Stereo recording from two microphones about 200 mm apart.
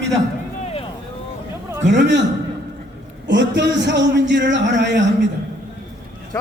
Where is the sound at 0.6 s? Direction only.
30° left (ahead or behind).